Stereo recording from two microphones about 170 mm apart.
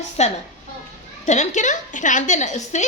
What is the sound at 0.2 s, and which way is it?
A woman's voice, 40° left (ahead or behind).